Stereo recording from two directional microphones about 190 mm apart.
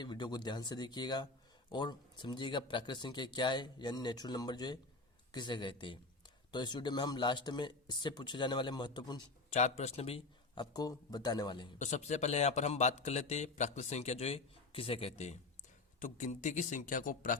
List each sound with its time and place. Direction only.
0.0 s speech: 25° left (ahead or behind)
9.5 s speech: 35° left (ahead or behind)
11.8 s a man's voice: 35° left (ahead or behind)